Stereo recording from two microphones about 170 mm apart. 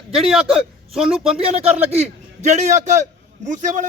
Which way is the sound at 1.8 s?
40° right (ahead or behind).